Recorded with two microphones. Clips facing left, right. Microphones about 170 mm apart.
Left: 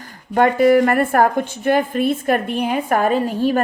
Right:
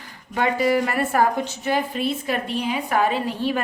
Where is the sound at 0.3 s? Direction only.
50° left (ahead or behind).